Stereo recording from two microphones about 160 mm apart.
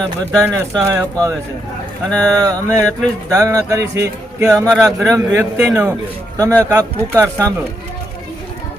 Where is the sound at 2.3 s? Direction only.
25° right (ahead or behind).